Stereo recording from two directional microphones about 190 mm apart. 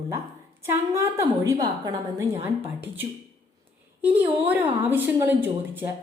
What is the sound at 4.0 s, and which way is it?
A woman's voice, 10° right (ahead or behind).